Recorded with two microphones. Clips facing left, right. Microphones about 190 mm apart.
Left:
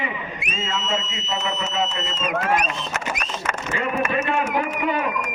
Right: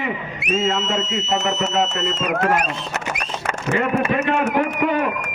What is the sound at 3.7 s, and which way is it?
Speech, 65° right (ahead or behind).